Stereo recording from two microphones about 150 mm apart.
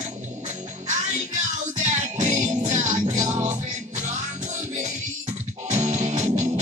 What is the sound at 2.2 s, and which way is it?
Music, 50° right (ahead or behind).